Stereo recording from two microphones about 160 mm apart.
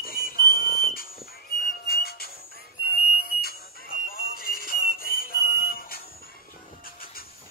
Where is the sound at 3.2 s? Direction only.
70° left (ahead or behind).